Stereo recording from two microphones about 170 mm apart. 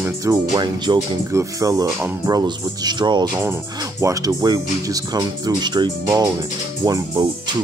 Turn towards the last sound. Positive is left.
turn(degrees=-20)  # may be behind; listen again after turning